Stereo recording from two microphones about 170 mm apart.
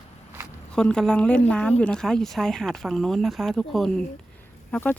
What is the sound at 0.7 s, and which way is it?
Speech, 5° left (ahead or behind).